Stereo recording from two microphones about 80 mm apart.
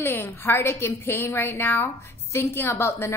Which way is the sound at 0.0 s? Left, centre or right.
Left.